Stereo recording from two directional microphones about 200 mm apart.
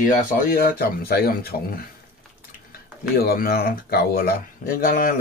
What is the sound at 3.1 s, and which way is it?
Speech, 50° left (ahead or behind).